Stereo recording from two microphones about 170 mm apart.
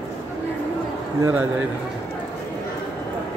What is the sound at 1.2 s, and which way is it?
Speech, 10° right (ahead or behind).